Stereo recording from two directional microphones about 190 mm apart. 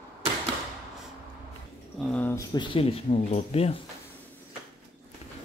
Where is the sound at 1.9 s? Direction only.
10° left (ahead or behind).